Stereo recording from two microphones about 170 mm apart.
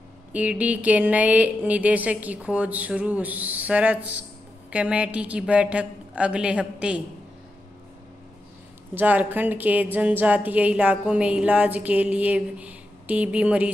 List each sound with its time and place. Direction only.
0.3 s a woman's voice: 10° right (ahead or behind)
8.9 s a woman's voice: 10° right (ahead or behind)